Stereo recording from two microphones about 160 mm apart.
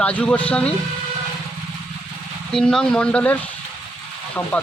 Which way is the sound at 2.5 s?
5° left (ahead or behind).